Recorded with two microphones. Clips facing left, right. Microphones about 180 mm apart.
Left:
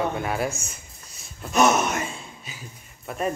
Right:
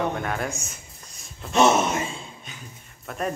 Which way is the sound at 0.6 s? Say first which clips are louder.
Right 1 dB; centre (ahead or behind).